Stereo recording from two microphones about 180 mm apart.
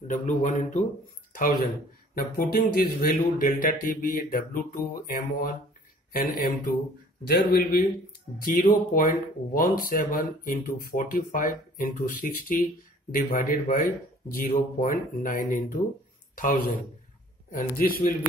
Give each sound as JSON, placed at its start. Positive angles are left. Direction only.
{"t": 0.1, "sound": "speech", "side_deg": 40}
{"t": 1.3, "sound": "a man's voice", "side_deg": 55}